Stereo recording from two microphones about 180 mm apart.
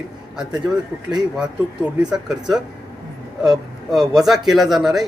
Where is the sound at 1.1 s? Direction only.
Centre (ahead or behind).